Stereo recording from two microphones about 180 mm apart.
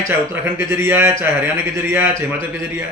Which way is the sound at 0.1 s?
10° right (ahead or behind).